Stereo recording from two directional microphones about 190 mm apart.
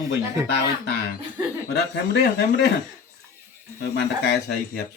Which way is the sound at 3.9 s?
65° left (ahead or behind).